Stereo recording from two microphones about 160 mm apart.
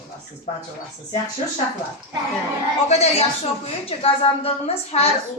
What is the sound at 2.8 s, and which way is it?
A woman's voice, 40° left (ahead or behind).